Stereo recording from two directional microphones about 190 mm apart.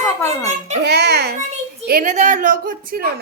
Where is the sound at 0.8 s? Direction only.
60° right (ahead or behind).